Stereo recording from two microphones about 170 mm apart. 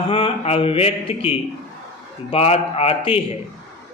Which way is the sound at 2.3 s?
35° left (ahead or behind).